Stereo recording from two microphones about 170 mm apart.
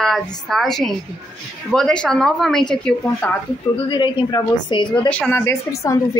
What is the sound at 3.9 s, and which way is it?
A woman's voice, 30° left (ahead or behind).